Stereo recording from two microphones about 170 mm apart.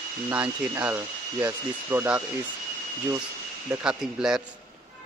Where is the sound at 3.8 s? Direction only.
5° right (ahead or behind).